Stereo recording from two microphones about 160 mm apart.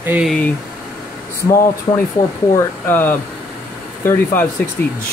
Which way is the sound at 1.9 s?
25° left (ahead or behind).